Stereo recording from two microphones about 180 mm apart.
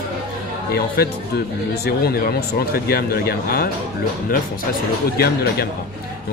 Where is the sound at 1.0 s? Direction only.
60° left (ahead or behind).